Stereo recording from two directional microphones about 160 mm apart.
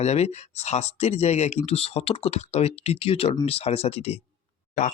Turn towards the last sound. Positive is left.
turn(degrees=50)  # may be behind; listen again after turning